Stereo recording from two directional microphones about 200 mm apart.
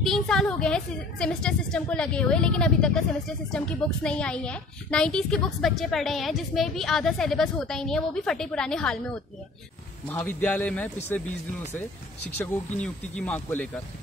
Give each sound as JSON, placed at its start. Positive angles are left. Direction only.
{"t": 0.0, "sound": "a woman's voice", "side_deg": 0}
{"t": 10.0, "sound": "a man's voice", "side_deg": 10}
{"t": 12.4, "sound": "a man's voice", "side_deg": 10}